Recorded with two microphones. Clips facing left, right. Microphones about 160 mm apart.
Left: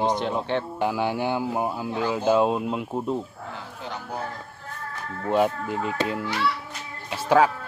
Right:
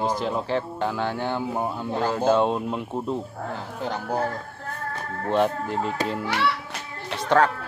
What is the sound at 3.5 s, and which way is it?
Speech, 45° right (ahead or behind).